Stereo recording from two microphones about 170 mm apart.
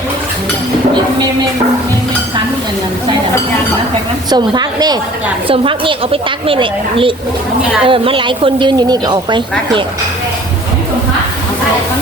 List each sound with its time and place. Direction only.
4.3 s a woman's voice: 25° right (ahead or behind)